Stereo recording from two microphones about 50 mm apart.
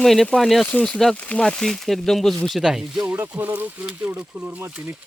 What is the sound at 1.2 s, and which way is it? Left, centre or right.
Speech, left.